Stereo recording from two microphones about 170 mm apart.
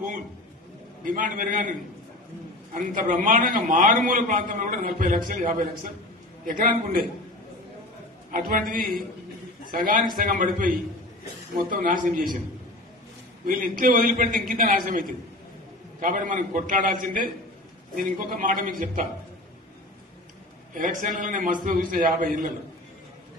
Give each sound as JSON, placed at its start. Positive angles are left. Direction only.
{"t": 1.0, "sound": "a man's voice", "side_deg": -50}
{"t": 2.7, "sound": "a man's voice", "side_deg": -50}
{"t": 8.3, "sound": "a man's voice", "side_deg": -55}
{"t": 13.5, "sound": "a man's voice", "side_deg": -55}
{"t": 20.7, "sound": "a man's voice", "side_deg": -50}